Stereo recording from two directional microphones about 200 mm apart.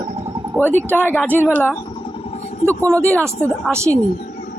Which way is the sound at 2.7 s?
15° right (ahead or behind).